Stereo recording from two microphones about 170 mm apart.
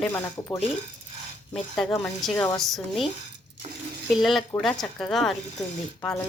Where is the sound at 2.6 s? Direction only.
Centre (ahead or behind).